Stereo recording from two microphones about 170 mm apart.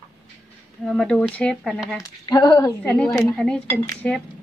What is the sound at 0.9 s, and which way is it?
A woman's voice, 5° left (ahead or behind).